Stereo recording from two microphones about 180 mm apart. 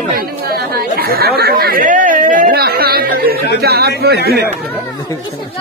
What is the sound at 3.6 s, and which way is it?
Speech, 60° right (ahead or behind).